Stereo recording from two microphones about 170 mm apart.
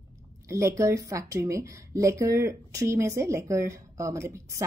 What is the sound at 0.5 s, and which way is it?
Speech, 15° right (ahead or behind).